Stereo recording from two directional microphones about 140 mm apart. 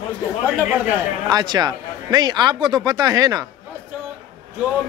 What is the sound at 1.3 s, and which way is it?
Speech, 30° right (ahead or behind).